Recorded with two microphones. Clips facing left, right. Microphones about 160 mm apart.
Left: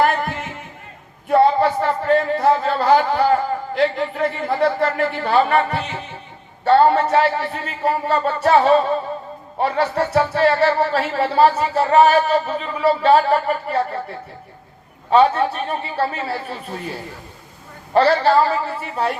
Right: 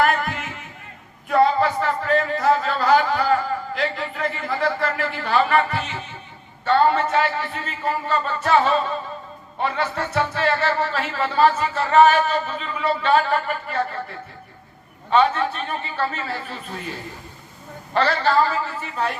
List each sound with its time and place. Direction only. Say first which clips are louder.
1.3 s speech: left 3 dB; 30° left (ahead or behind)
17.9 s speech: left 5 dB; 35° left (ahead or behind)